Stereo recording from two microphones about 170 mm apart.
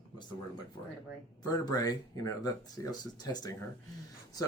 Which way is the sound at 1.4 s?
20° left (ahead or behind).